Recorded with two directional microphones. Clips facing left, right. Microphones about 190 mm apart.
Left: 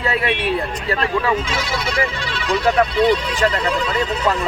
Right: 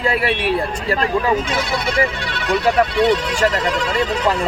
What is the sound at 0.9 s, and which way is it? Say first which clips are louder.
Speech: right 2 dB; 35° right (ahead or behind).